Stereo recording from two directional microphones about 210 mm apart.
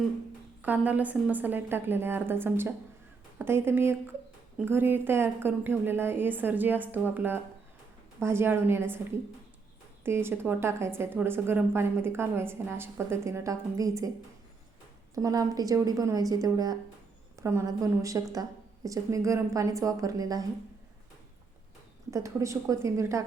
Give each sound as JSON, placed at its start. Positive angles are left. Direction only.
{"t": 0.6, "sound": "a woman's voice", "side_deg": -10}
{"t": 10.0, "sound": "a woman's voice", "side_deg": -10}
{"t": 15.1, "sound": "a woman's voice", "side_deg": -15}
{"t": 22.1, "sound": "a woman's voice", "side_deg": -15}